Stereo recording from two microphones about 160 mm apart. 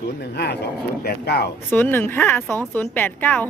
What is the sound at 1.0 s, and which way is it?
Speech, 80° left.